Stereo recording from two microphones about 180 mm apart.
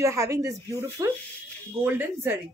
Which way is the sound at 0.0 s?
15° right (ahead or behind).